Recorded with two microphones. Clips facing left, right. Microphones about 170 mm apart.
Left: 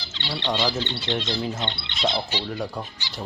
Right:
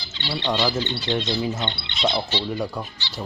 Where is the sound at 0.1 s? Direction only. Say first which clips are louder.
Right 2 dB; 5° right (ahead or behind).